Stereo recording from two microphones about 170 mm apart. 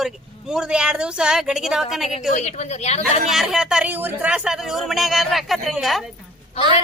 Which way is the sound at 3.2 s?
Centre (ahead or behind).